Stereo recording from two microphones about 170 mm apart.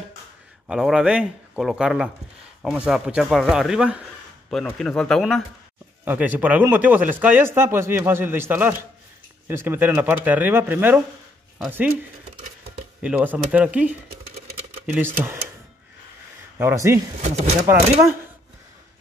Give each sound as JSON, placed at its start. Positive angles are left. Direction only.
{"t": 0.7, "sound": "speech", "side_deg": -5}
{"t": 6.0, "sound": "speech", "side_deg": -10}
{"t": 13.0, "sound": "speech", "side_deg": -10}
{"t": 16.5, "sound": "speech", "side_deg": -15}
{"t": 17.2, "sound": "speech", "side_deg": -40}